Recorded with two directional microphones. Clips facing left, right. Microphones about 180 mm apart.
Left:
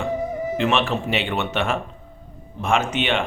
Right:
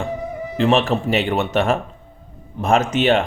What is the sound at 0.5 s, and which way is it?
A man's voice, 35° right (ahead or behind).